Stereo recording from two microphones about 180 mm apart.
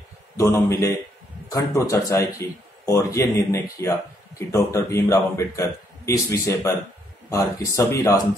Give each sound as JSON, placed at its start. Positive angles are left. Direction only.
{"t": 0.4, "sound": "speech", "side_deg": 15}